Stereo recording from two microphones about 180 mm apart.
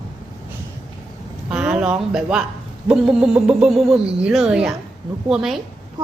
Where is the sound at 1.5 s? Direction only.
5° right (ahead or behind).